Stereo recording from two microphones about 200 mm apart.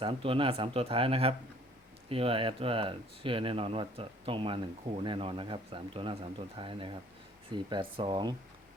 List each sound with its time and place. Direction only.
0.0 s speech: 25° right (ahead or behind)